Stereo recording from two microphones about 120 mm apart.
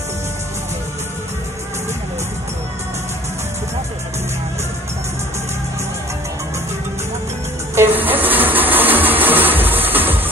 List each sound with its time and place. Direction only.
7.7 s music: 15° right (ahead or behind)